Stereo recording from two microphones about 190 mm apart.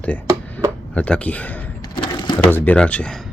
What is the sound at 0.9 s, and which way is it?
Speech, 5° left (ahead or behind).